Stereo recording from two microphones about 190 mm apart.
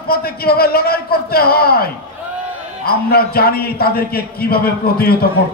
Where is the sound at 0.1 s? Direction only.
55° left (ahead or behind).